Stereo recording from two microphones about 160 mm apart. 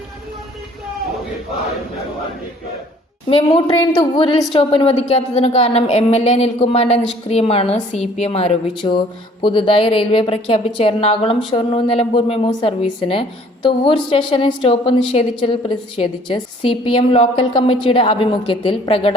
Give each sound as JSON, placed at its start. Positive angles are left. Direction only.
{"t": 3.2, "sound": "a woman's voice", "side_deg": 35}
{"t": 3.7, "sound": "a woman's voice", "side_deg": 25}